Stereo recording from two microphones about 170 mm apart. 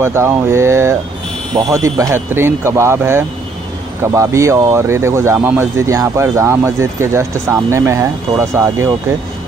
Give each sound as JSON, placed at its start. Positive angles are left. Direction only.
{"t": 0.0, "sound": "speech", "side_deg": -15}